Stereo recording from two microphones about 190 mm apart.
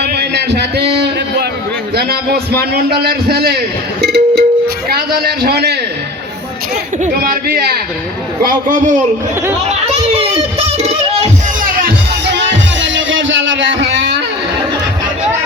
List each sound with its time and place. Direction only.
0.0 s a sound: 60° right (ahead or behind)
2.0 s a man's voice: 55° right (ahead or behind)
4.0 s music: 55° right (ahead or behind)
4.9 s a man's voice: 50° right (ahead or behind)
7.0 s a man's voice: 50° right (ahead or behind)
9.6 s a sound: 30° right (ahead or behind)
11.6 s music: 50° right (ahead or behind)
12.3 s music: 70° right (ahead or behind)